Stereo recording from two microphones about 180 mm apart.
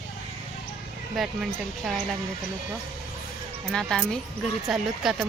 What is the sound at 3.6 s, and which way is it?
Speech, centre (ahead or behind).